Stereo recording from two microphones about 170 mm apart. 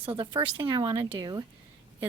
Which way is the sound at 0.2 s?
30° right (ahead or behind).